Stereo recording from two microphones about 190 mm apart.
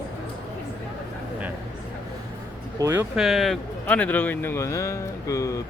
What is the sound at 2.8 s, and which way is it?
Speech, 10° right (ahead or behind).